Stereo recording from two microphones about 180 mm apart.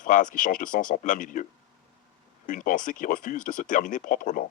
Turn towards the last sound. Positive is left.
turn(degrees=50)  # may be behind; listen again after turning